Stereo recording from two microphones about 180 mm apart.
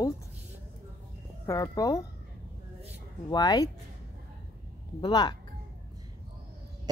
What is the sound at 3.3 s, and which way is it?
Speech, 20° left (ahead or behind).